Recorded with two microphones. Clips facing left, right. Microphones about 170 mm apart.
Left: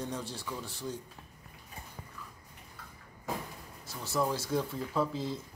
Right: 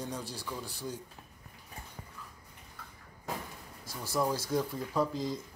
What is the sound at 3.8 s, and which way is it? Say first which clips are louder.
Speech: right 1 dB; 25° left (ahead or behind).